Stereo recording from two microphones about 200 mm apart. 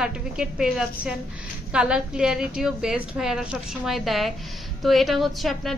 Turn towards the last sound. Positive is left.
turn(degrees=0)  # may be behind; listen again after turning